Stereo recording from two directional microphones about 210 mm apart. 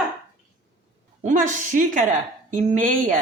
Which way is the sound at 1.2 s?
35° right (ahead or behind).